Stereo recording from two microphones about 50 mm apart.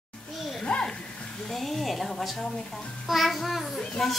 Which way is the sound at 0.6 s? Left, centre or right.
Centre.